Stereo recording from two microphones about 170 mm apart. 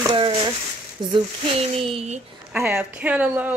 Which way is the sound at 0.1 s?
30° right (ahead or behind).